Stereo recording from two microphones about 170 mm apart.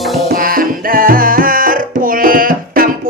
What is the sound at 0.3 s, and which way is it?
Music, 55° right (ahead or behind).